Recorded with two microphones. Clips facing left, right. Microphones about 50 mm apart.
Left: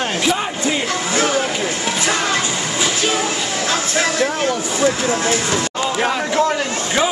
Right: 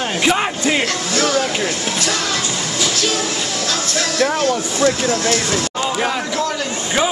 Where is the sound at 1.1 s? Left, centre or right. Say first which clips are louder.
Even; left.